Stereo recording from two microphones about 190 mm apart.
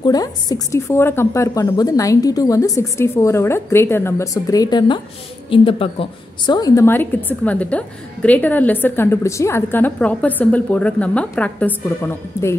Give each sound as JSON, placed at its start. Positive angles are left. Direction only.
{"t": 0.0, "sound": "a woman's voice", "side_deg": 20}